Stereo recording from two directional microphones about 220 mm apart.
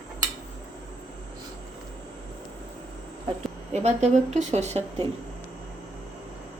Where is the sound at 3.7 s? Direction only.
30° right (ahead or behind).